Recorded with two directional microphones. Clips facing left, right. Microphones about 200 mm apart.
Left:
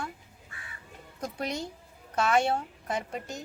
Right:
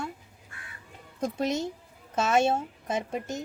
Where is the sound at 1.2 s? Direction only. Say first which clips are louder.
Right 6 dB; 25° right (ahead or behind).